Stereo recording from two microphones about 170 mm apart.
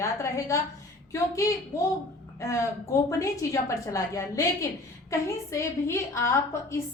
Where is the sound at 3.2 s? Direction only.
20° left (ahead or behind).